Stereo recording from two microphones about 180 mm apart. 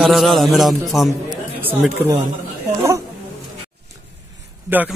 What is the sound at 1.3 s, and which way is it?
Chatter, 10° right (ahead or behind).